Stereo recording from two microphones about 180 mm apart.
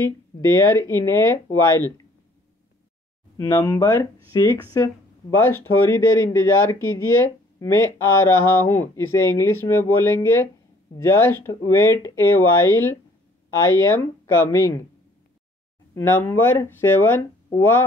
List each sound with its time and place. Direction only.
0.0 s speech: 15° left (ahead or behind)
3.3 s speech: 20° left (ahead or behind)
15.9 s speech: 10° left (ahead or behind)